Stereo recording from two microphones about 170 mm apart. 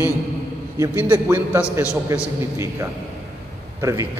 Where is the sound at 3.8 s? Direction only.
20° right (ahead or behind).